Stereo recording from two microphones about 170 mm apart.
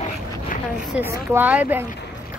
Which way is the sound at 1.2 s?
10° right (ahead or behind).